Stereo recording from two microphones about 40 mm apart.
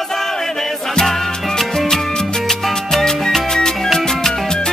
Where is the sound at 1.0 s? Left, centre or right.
Centre.